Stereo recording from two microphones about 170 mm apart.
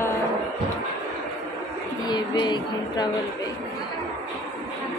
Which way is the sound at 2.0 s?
25° left (ahead or behind).